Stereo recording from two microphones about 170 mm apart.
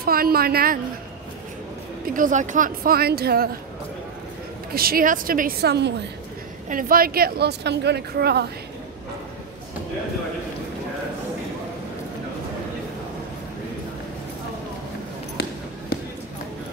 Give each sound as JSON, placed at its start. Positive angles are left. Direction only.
{"t": 0.0, "sound": "speech", "side_deg": -60}
{"t": 2.0, "sound": "speech", "side_deg": -50}
{"t": 4.7, "sound": "speech", "side_deg": -60}
{"t": 6.7, "sound": "speech", "side_deg": -55}